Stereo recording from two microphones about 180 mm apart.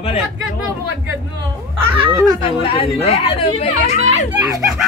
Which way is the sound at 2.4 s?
35° left (ahead or behind).